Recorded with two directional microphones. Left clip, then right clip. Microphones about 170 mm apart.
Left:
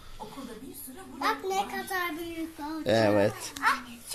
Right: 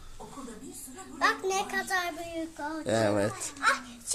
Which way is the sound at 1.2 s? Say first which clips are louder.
Right 1 dB; 30° right (ahead or behind).